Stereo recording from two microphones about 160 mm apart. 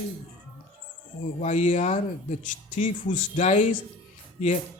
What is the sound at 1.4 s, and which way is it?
Speech, 50° left (ahead or behind).